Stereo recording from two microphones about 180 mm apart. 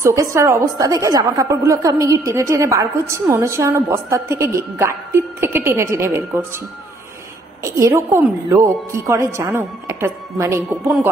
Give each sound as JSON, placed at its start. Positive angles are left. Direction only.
{"t": 0.0, "sound": "a woman's voice", "side_deg": -15}
{"t": 7.6, "sound": "a woman's voice", "side_deg": -15}